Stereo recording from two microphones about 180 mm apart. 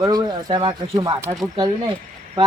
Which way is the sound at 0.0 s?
20° right (ahead or behind).